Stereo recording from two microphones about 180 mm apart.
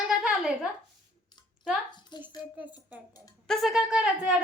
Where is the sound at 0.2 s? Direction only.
5° right (ahead or behind).